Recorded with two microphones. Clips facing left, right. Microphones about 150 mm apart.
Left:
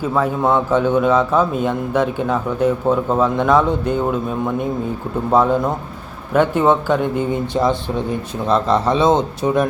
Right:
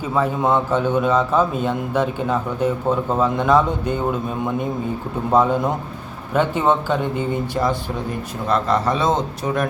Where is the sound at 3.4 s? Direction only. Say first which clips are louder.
Left 2 dB; 5° right (ahead or behind).